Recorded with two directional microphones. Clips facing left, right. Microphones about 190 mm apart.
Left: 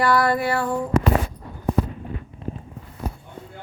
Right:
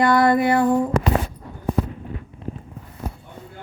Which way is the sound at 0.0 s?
20° right (ahead or behind).